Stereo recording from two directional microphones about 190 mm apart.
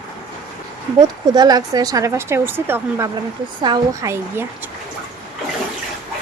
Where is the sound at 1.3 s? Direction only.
20° right (ahead or behind).